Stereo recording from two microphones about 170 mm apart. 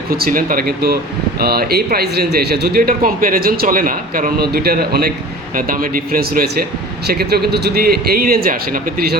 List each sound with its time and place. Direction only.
0.1 s speech: 60° right (ahead or behind)
5.5 s speech: 55° right (ahead or behind)